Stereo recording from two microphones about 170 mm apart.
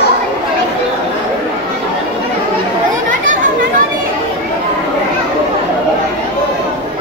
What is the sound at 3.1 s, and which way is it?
Chatter, 50° right (ahead or behind).